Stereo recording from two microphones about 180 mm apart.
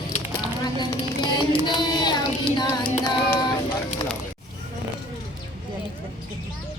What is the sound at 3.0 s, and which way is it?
Female singing, 25° left (ahead or behind).